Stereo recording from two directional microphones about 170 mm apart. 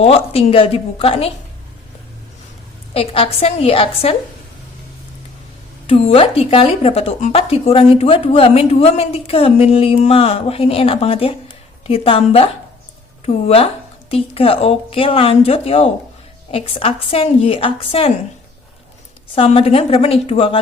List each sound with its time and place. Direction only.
0.0 s a woman's voice: 35° left (ahead or behind)
2.9 s a woman's voice: 35° left (ahead or behind)
5.9 s a woman's voice: 35° left (ahead or behind)
19.4 s a woman's voice: 35° left (ahead or behind)